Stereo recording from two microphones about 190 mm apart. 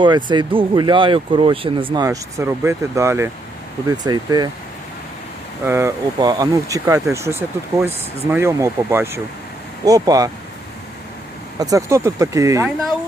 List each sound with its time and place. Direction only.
0.3 s speech: 25° right (ahead or behind)
2.0 s speech: 15° right (ahead or behind)
5.6 s speech: 15° right (ahead or behind)
11.6 s speech: 15° right (ahead or behind)